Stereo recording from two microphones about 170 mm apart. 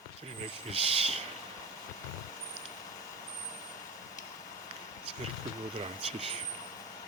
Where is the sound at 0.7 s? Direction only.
35° right (ahead or behind).